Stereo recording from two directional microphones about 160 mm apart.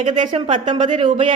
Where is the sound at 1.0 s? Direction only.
30° right (ahead or behind).